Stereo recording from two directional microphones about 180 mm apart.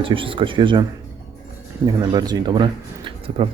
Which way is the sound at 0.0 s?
30° right (ahead or behind).